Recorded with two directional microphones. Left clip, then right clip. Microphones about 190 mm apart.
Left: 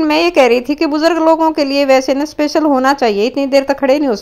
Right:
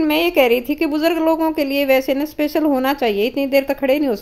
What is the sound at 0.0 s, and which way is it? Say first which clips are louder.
A woman's voice: left 5 dB; 15° left (ahead or behind).